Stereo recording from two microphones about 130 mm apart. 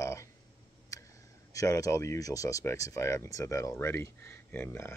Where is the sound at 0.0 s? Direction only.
25° left (ahead or behind).